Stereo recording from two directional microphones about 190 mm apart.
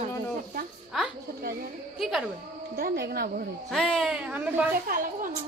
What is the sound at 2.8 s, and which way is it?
Speech, 55° right (ahead or behind).